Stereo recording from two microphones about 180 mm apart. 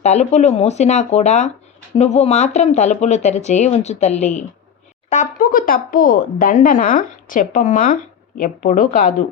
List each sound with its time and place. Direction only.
0.0 s speech: 40° left (ahead or behind)